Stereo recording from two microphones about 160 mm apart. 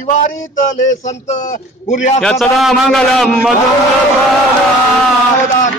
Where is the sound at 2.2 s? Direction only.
Centre (ahead or behind).